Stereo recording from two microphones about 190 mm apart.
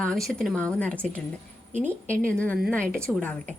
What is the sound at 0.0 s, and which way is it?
A woman's voice, 5° left (ahead or behind).